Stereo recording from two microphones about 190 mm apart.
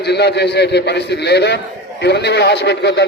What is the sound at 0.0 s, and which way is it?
A man's voice, 60° left (ahead or behind).